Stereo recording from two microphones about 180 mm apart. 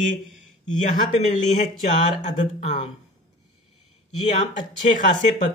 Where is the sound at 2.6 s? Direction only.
40° left (ahead or behind).